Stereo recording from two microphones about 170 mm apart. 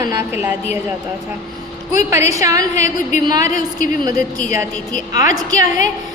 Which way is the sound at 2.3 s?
20° right (ahead or behind).